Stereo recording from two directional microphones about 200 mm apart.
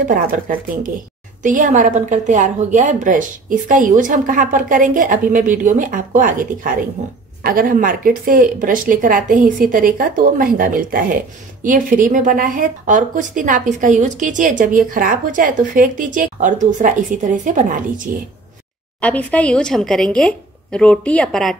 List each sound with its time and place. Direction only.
0.1 s speech: 45° right (ahead or behind)
18.9 s a woman's voice: 5° left (ahead or behind)